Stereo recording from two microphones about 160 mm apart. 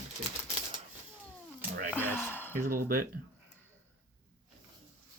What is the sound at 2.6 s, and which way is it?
Speech, 65° right (ahead or behind).